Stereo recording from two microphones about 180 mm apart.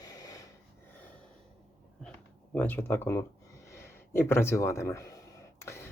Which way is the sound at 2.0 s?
5° left (ahead or behind).